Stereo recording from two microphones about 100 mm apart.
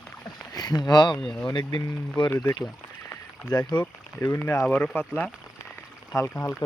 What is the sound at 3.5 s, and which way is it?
Speech, 40° left (ahead or behind).